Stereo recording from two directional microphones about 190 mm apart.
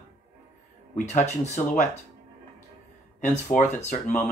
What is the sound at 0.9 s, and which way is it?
Speech, 40° left (ahead or behind).